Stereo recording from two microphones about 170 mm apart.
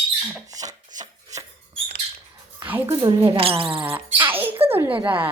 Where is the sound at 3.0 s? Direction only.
30° right (ahead or behind).